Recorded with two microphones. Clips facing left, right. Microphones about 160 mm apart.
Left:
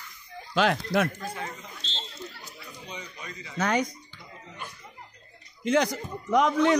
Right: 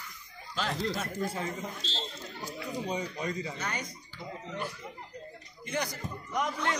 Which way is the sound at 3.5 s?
90° left.